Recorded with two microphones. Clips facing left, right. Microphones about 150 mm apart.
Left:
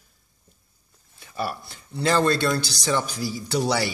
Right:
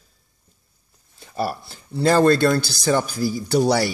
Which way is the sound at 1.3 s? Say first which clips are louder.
Right 4 dB; 35° right (ahead or behind).